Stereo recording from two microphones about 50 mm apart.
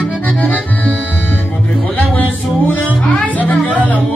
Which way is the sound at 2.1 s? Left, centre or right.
Left.